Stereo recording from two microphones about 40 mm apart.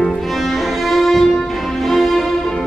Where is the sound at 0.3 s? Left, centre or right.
Centre.